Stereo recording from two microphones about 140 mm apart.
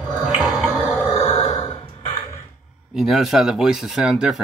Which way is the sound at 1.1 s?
45° left (ahead or behind).